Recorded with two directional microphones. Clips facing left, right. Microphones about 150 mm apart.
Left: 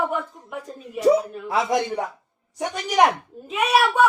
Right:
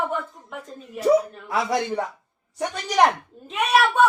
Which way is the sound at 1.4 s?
20° left (ahead or behind).